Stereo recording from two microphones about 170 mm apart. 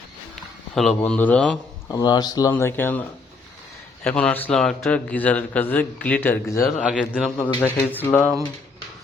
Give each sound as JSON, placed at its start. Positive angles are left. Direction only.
{"t": 0.7, "sound": "a man's voice", "side_deg": 5}
{"t": 1.9, "sound": "a man's voice", "side_deg": 25}